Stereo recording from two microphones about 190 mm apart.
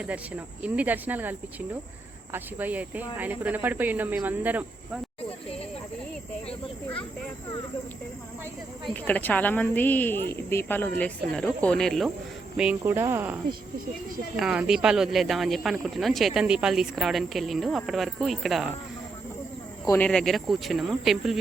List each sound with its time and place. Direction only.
0.0 s speech: 5° right (ahead or behind)
8.8 s speech: 5° left (ahead or behind)
12.5 s speech: 10° right (ahead or behind)
20.0 s speech: 5° left (ahead or behind)